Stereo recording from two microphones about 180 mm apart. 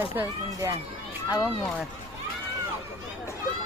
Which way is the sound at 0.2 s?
15° right (ahead or behind).